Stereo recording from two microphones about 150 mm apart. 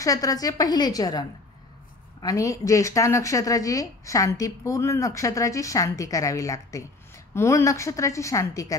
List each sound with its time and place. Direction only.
0.0 s a woman's voice: 25° left (ahead or behind)
2.2 s a woman's voice: 20° left (ahead or behind)